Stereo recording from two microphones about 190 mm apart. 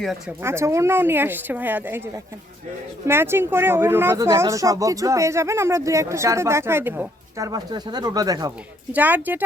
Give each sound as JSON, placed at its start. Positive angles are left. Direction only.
{"t": 0.0, "sound": "speech", "side_deg": 0}
{"t": 0.4, "sound": "speech", "side_deg": -15}
{"t": 8.9, "sound": "speech", "side_deg": -10}